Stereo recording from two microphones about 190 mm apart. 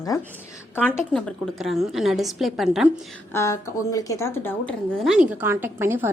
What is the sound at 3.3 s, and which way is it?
A woman's voice, 15° left (ahead or behind).